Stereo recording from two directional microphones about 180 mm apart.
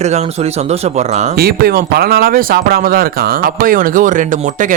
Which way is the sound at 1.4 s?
55° right (ahead or behind).